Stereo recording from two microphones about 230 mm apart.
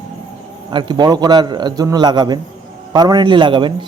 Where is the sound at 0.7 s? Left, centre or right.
Centre.